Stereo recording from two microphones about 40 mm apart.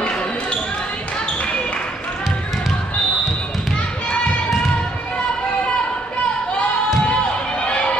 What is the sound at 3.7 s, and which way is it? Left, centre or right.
Children playing, left.